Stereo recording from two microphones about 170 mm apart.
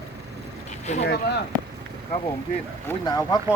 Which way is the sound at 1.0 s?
80° left.